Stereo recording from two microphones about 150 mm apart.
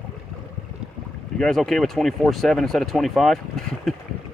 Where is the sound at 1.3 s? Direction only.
5° left (ahead or behind).